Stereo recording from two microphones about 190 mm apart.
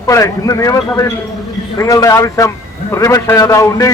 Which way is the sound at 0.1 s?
15° left (ahead or behind).